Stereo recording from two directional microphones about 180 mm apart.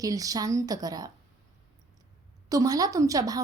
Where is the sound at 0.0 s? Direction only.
20° right (ahead or behind).